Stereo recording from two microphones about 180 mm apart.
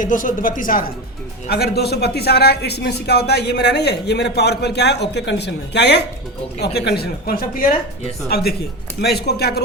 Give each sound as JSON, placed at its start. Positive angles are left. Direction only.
{"t": 0.0, "sound": "speech", "side_deg": 45}
{"t": 1.5, "sound": "speech", "side_deg": 60}
{"t": 9.0, "sound": "speech", "side_deg": 65}